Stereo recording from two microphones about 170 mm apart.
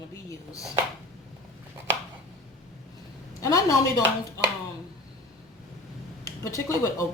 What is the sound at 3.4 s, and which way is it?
Speech, 20° left (ahead or behind).